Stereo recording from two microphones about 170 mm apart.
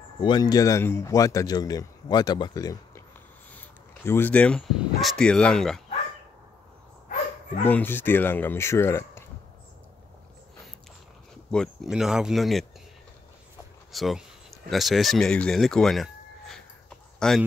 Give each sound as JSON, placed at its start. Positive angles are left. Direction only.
{"t": 0.2, "sound": "a man's voice", "side_deg": 25}
{"t": 7.6, "sound": "speech", "side_deg": 10}
{"t": 11.5, "sound": "speech", "side_deg": 0}
{"t": 13.9, "sound": "speech", "side_deg": 0}